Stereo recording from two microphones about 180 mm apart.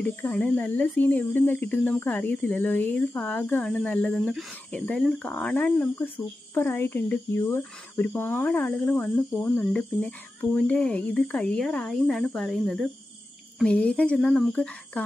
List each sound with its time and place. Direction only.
0.0 s speech: 10° left (ahead or behind)